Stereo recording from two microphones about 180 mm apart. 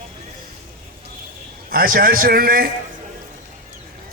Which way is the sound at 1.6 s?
55° right (ahead or behind).